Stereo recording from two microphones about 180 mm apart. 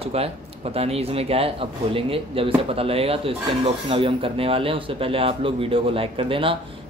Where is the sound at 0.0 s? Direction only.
35° right (ahead or behind).